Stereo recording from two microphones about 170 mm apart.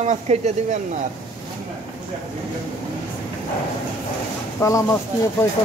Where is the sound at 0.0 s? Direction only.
45° right (ahead or behind).